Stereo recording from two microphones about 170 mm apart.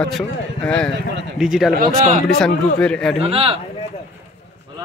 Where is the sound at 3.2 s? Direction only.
35° right (ahead or behind).